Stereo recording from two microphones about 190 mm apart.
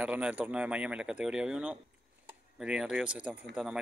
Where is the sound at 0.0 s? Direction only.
5° right (ahead or behind).